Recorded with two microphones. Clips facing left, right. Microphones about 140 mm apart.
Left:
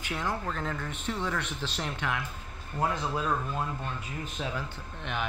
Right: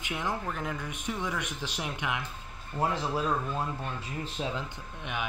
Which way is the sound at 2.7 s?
30° right (ahead or behind).